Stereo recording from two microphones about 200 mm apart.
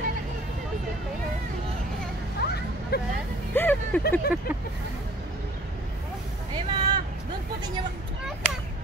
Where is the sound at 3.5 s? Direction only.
10° left (ahead or behind).